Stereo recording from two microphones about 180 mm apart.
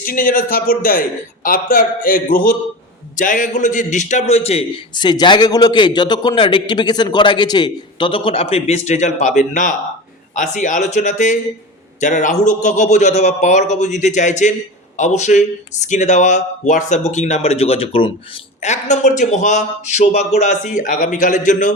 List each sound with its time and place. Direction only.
0.0 s a man's voice: 50° left (ahead or behind)